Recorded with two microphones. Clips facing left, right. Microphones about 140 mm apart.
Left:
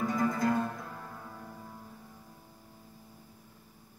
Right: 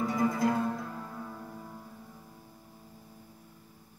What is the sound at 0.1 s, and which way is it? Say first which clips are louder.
Music: right 1 dB; 20° right (ahead or behind).